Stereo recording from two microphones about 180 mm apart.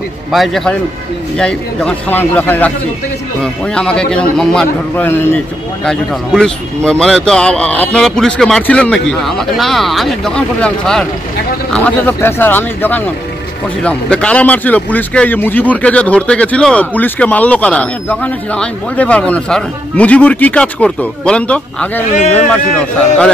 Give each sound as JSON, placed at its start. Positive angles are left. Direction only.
{"t": 0.3, "sound": "a man's voice", "side_deg": 0}
{"t": 3.7, "sound": "a man's voice", "side_deg": 5}